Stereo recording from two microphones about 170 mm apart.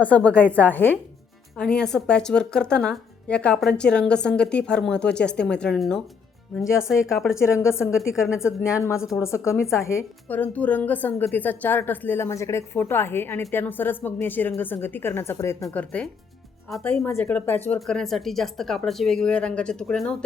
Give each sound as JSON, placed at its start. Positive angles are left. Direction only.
{"t": 0.0, "sound": "a woman's voice", "side_deg": 10}
{"t": 7.3, "sound": "a woman's voice", "side_deg": 15}